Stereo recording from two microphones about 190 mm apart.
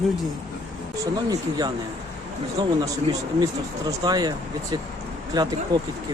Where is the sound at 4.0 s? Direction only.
20° right (ahead or behind).